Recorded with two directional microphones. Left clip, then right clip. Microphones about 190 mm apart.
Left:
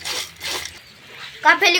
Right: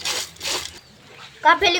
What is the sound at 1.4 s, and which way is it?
Speech, 5° right (ahead or behind).